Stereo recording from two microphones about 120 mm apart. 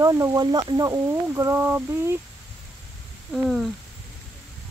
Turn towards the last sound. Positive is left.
turn(degrees=0)  # may be behind; listen again after turning